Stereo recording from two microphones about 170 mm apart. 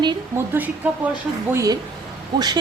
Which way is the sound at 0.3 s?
10° right (ahead or behind).